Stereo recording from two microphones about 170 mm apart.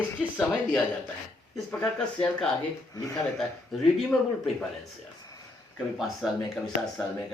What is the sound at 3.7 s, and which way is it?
Speech, centre (ahead or behind).